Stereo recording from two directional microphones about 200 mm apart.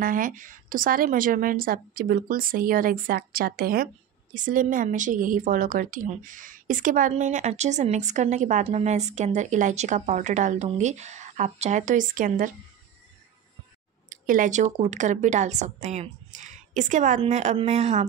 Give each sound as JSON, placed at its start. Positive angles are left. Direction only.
{"t": 0.0, "sound": "a woman's voice", "side_deg": -45}
{"t": 14.0, "sound": "a woman's voice", "side_deg": -40}